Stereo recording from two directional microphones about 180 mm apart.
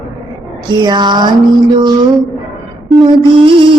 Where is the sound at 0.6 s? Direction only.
25° right (ahead or behind).